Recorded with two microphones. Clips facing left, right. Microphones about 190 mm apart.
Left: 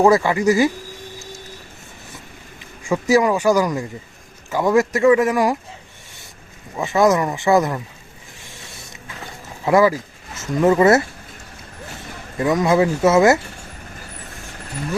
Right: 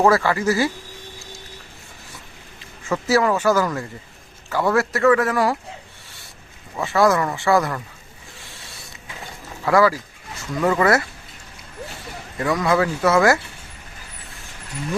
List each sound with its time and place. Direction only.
0.0 s speech: 15° left (ahead or behind)
2.8 s speech: 15° left (ahead or behind)
6.7 s speech: 20° left (ahead or behind)
8.4 s creak: 20° left (ahead or behind)
9.6 s speech: 20° left (ahead or behind)
12.4 s speech: 20° left (ahead or behind)